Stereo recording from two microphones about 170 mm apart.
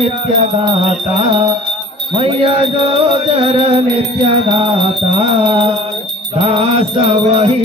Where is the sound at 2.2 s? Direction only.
35° right (ahead or behind).